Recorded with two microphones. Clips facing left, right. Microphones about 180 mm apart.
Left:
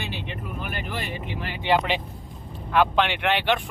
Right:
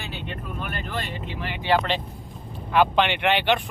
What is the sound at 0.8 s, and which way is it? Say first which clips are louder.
Speech: even; 15° left (ahead or behind).